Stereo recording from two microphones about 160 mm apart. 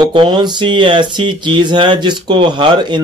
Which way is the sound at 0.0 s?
30° right (ahead or behind).